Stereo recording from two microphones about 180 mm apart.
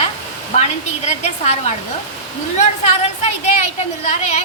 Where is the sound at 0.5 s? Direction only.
40° left (ahead or behind).